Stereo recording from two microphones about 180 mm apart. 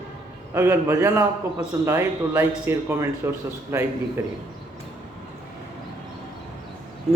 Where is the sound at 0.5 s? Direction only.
15° right (ahead or behind).